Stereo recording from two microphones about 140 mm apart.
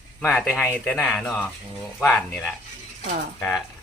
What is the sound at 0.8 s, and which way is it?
Speech, 10° left (ahead or behind).